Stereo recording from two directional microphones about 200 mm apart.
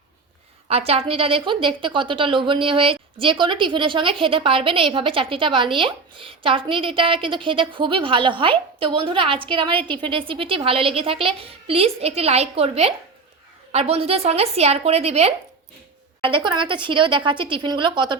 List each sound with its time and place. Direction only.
0.7 s a woman's voice: 30° right (ahead or behind)